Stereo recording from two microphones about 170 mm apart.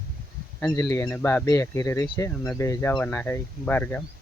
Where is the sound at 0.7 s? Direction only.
20° left (ahead or behind).